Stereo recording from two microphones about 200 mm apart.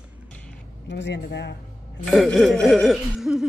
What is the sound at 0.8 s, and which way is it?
Speech, 60° left (ahead or behind).